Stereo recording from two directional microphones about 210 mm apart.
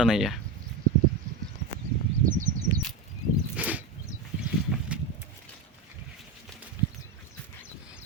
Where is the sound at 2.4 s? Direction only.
35° right (ahead or behind).